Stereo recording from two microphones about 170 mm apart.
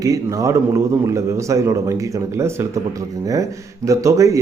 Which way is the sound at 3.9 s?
20° right (ahead or behind).